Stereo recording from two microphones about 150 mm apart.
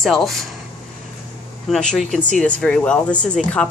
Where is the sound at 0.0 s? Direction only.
Centre (ahead or behind).